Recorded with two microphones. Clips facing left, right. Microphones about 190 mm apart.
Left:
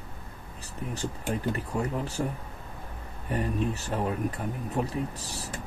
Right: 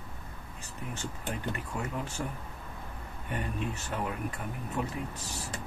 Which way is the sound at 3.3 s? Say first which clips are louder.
Left 6 dB; 35° left (ahead or behind).